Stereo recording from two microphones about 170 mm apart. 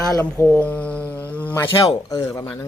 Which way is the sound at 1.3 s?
10° left (ahead or behind).